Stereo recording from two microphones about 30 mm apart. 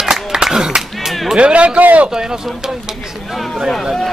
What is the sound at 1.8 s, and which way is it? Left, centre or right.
Speech, right.